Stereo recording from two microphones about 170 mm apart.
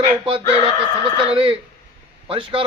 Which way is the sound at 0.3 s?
35° right (ahead or behind).